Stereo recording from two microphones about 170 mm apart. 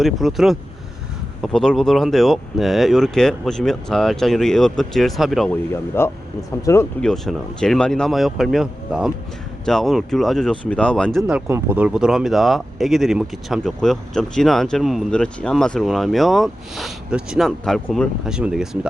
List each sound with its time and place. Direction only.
0.0 s speech: centre (ahead or behind)
5.5 s speech: 15° left (ahead or behind)
7.0 s speech: 5° left (ahead or behind)